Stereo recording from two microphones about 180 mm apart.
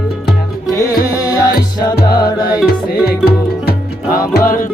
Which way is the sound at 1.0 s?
20° left (ahead or behind).